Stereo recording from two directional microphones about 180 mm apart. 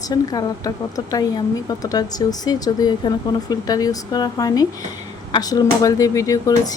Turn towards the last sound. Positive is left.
turn(degrees=20)  # may be behind; listen again after turning